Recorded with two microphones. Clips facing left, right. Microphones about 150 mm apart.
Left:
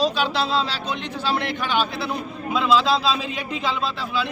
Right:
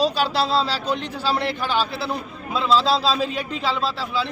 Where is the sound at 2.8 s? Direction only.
35° right (ahead or behind).